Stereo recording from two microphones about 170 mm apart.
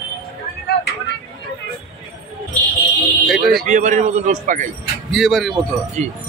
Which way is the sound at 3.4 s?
60° right (ahead or behind).